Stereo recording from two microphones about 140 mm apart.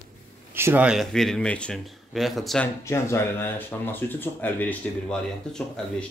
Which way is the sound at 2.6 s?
20° left (ahead or behind).